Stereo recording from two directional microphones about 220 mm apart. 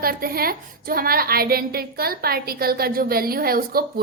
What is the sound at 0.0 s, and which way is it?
A woman's voice, 40° right (ahead or behind).